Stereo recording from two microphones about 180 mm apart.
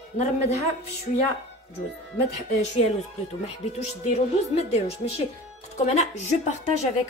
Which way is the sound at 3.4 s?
40° left (ahead or behind).